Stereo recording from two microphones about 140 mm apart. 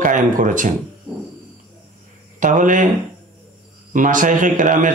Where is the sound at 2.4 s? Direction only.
65° right (ahead or behind).